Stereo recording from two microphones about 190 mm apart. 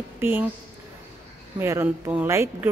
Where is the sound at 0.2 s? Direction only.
10° right (ahead or behind).